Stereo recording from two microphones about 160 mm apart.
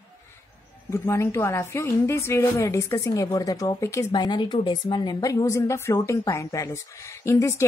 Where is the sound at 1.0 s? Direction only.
15° left (ahead or behind).